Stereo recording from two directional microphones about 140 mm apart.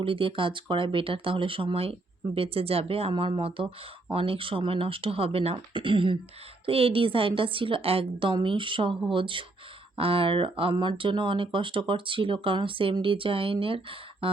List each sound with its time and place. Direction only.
0.0 s speech: 40° right (ahead or behind)